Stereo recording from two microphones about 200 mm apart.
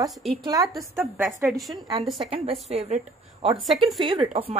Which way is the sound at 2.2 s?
30° right (ahead or behind).